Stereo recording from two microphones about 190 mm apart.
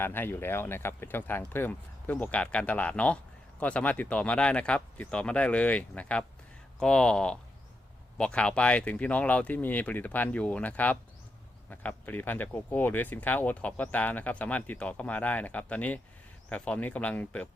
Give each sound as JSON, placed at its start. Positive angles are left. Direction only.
{"t": 0.0, "sound": "speech", "side_deg": 10}